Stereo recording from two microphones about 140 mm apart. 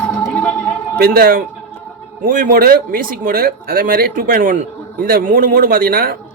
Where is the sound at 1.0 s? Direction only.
90° right.